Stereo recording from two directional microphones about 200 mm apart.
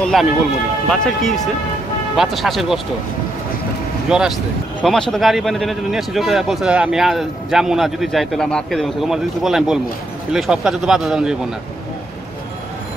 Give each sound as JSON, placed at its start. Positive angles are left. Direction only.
{"t": 0.1, "sound": "speech", "side_deg": 0}
{"t": 4.1, "sound": "speech", "side_deg": -5}